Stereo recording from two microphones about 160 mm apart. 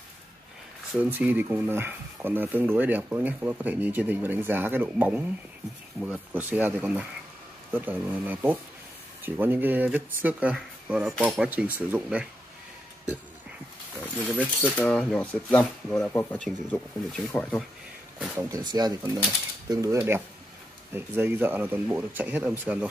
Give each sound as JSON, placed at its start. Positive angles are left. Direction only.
{"t": 0.9, "sound": "speech", "side_deg": -10}
{"t": 14.6, "sound": "speech", "side_deg": 5}
{"t": 18.2, "sound": "speech", "side_deg": -10}
{"t": 18.5, "sound": "speech", "side_deg": -25}